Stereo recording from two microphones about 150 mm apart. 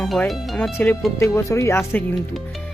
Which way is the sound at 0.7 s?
15° left (ahead or behind).